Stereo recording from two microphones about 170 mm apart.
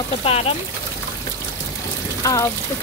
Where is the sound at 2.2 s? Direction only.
20° left (ahead or behind).